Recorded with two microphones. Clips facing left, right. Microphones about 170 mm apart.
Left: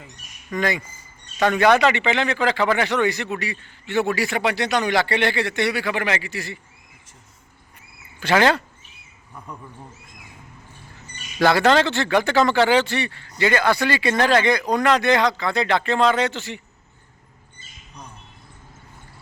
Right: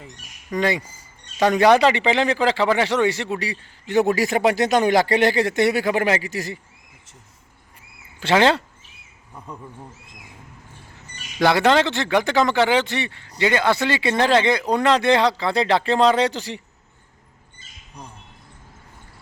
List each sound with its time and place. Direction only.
0.5 s speech: 30° right (ahead or behind)
8.2 s speech: 25° right (ahead or behind)
11.4 s speech: 15° right (ahead or behind); by 16.6 s 35° right (ahead or behind)